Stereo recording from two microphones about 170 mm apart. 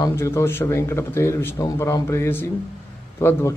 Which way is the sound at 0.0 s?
15° left (ahead or behind).